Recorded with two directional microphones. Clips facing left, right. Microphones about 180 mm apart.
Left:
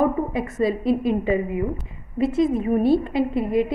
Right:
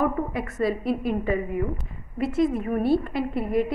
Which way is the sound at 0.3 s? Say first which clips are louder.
Left 3 dB; 20° left (ahead or behind).